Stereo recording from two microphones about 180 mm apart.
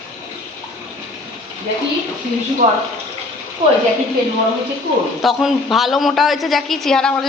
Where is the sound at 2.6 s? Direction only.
40° right (ahead or behind).